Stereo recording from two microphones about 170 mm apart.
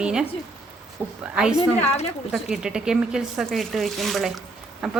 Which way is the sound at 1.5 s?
40° left (ahead or behind).